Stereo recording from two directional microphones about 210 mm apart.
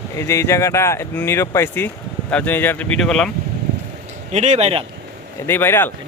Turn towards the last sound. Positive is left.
turn(degrees=10)  # may be behind; listen again after turning